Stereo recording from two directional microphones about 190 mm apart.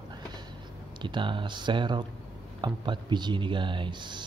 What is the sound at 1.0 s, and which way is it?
Speech, 25° right (ahead or behind).